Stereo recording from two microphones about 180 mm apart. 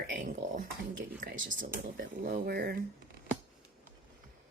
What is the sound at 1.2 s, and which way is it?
Speech, 60° right (ahead or behind).